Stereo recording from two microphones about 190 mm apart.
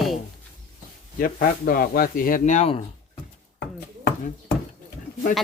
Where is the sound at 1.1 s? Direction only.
50° left (ahead or behind); by 2.8 s 30° left (ahead or behind).